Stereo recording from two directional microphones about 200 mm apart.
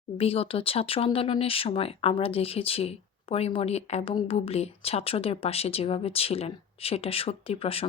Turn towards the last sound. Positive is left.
turn(degrees=30)  # may be behind; listen again after turning